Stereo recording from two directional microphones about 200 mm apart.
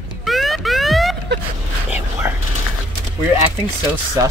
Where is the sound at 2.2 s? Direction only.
10° right (ahead or behind).